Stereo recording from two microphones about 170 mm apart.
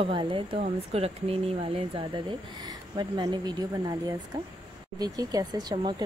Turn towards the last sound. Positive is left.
turn(degrees=-25)  # may be behind; listen again after turning